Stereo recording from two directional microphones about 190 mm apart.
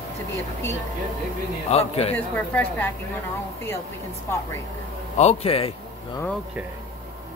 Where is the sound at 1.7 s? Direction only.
30° left (ahead or behind).